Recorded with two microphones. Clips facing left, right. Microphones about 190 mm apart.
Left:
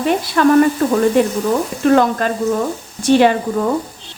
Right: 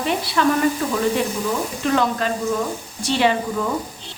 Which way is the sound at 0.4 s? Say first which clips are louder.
Left 7 dB; 50° left (ahead or behind).